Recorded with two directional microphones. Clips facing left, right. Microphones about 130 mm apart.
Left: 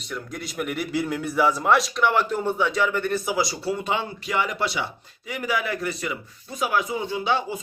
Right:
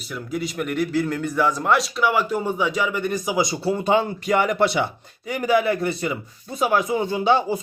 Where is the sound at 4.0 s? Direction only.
50° right (ahead or behind).